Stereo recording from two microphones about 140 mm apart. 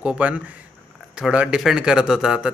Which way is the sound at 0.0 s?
10° right (ahead or behind).